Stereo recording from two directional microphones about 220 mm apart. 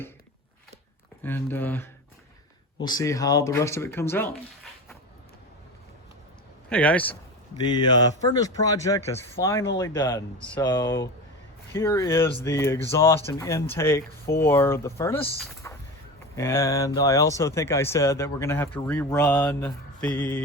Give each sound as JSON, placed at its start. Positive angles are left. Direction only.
{"t": 1.2, "sound": "speech", "side_deg": 10}
{"t": 6.7, "sound": "speech", "side_deg": 5}
{"t": 7.6, "sound": "speech", "side_deg": 20}
{"t": 15.6, "sound": "a sound", "side_deg": 15}
{"t": 16.3, "sound": "speech", "side_deg": 10}